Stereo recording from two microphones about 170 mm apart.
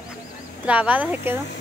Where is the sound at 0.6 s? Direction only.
10° right (ahead or behind).